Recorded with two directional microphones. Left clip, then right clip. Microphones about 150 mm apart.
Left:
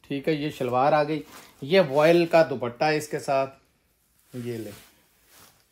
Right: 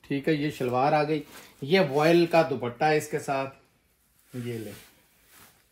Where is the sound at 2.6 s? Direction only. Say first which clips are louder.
Even; 60° left (ahead or behind).